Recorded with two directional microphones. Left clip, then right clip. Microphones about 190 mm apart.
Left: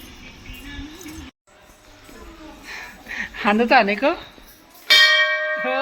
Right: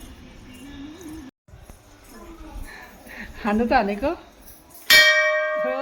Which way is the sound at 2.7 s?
Centre (ahead or behind).